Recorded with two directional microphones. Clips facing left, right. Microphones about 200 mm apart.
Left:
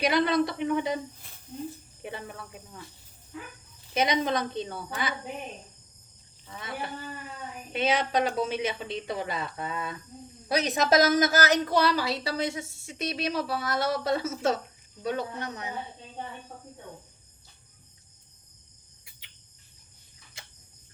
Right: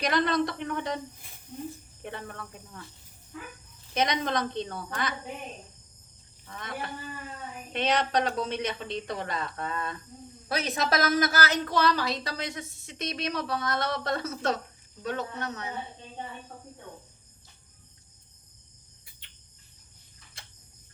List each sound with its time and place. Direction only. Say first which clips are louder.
0.0 s a man's voice: left 2 dB; 5° left (ahead or behind)
2.0 s a man's voice: left 1 dB; 5° left (ahead or behind)
3.9 s a man's voice: left 2 dB; 5° left (ahead or behind)
6.5 s a man's voice: left 1 dB; 5° left (ahead or behind)
10.5 s speech: left 5 dB; 15° left (ahead or behind)